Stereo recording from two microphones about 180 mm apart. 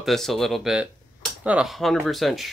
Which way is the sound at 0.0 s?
Centre (ahead or behind).